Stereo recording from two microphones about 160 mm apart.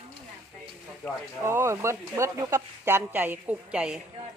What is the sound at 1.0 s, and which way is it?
Speech, 10° left (ahead or behind).